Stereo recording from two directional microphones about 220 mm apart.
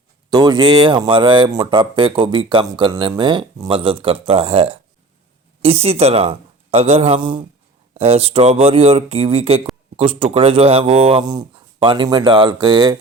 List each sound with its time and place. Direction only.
0.3 s speech: 20° right (ahead or behind)